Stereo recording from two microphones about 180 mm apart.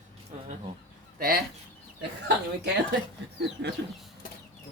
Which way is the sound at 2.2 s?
70° right (ahead or behind).